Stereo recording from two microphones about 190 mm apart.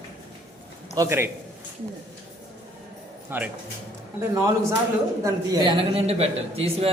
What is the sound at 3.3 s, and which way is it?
Speech, 10° right (ahead or behind).